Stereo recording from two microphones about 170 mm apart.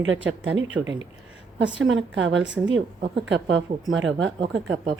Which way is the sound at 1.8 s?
90° right.